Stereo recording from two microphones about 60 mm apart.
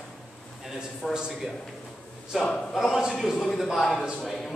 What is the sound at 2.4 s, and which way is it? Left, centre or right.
Speech, centre.